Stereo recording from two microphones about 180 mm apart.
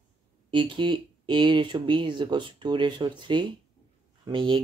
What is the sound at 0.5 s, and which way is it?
Speech, 25° right (ahead or behind).